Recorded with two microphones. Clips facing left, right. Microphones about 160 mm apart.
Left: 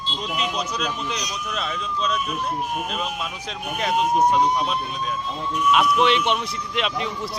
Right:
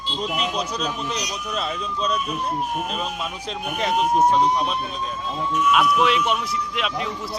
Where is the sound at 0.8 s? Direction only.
35° right (ahead or behind).